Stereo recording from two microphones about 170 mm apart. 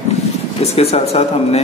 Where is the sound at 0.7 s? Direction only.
35° left (ahead or behind).